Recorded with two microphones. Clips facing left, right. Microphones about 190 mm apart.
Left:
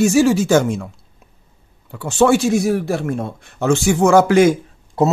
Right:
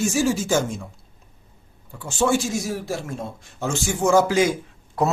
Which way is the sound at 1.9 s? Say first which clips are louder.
Left 7 dB; 70° left (ahead or behind).